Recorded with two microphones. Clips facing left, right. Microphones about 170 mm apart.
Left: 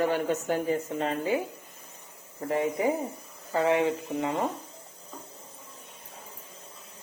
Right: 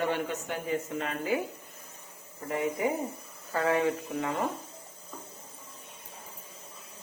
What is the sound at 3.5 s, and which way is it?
Speech, 20° left (ahead or behind).